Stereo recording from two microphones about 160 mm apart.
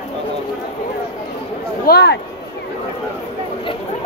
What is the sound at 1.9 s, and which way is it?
Speech, 85° left.